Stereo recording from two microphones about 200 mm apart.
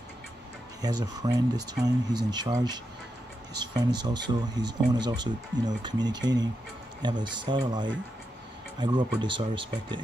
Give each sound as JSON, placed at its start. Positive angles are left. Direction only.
{"t": 0.8, "sound": "speech", "side_deg": -20}